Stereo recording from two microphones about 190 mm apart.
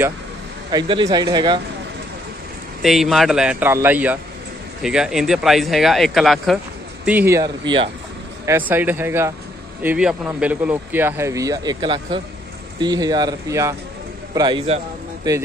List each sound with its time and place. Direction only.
0.7 s speech: 25° right (ahead or behind)
2.8 s speech: centre (ahead or behind)
7.1 s speech: 10° right (ahead or behind)
8.5 s speech: 10° right (ahead or behind)